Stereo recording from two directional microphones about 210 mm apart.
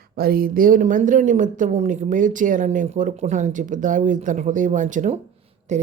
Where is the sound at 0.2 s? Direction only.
45° right (ahead or behind).